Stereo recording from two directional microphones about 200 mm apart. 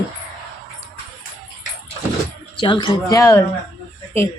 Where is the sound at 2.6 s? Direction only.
20° left (ahead or behind).